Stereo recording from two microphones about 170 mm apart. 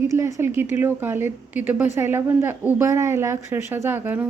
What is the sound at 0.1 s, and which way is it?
Speech, 15° right (ahead or behind).